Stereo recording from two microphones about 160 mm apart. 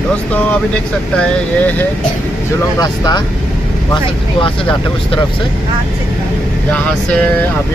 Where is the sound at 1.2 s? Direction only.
10° left (ahead or behind).